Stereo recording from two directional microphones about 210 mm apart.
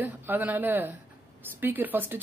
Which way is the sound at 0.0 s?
10° right (ahead or behind).